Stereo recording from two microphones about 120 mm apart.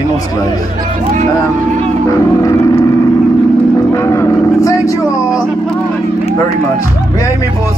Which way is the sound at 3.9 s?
25° left (ahead or behind).